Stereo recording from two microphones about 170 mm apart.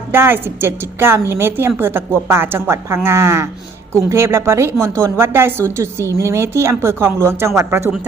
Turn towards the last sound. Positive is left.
turn(degrees=-15)  # may be behind; listen again after turning